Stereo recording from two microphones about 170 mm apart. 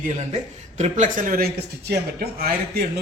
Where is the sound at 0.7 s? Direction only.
45° right (ahead or behind); by 2.8 s 65° right (ahead or behind).